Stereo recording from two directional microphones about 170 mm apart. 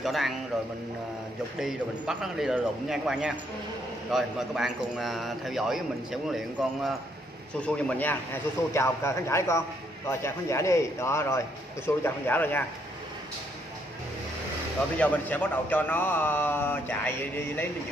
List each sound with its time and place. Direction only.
0.0 s a man's voice: centre (ahead or behind)
1.6 s a man's voice: 5° right (ahead or behind)
15.0 s a man's voice: 10° left (ahead or behind)